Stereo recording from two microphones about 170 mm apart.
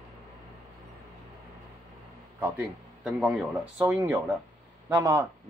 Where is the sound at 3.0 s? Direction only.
Centre (ahead or behind).